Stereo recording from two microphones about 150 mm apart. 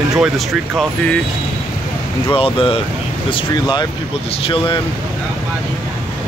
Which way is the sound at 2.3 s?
40° left (ahead or behind).